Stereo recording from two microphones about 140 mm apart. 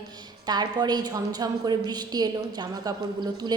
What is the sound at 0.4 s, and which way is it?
A woman's voice, 30° right (ahead or behind).